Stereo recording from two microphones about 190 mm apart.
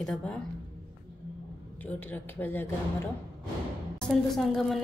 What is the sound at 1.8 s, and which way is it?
Speech, 10° left (ahead or behind).